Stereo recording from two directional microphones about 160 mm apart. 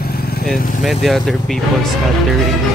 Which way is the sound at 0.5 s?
60° left (ahead or behind).